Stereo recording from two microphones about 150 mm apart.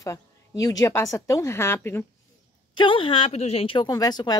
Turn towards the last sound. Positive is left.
turn(degrees=25)  # may be behind; listen again after turning